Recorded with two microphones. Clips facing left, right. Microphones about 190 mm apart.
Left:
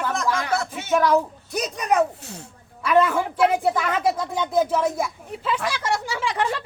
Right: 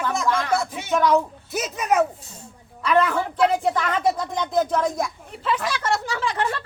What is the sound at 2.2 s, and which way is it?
Speech, 70° left (ahead or behind).